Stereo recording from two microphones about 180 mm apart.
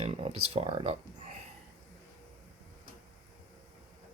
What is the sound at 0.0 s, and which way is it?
Speech, 30° right (ahead or behind).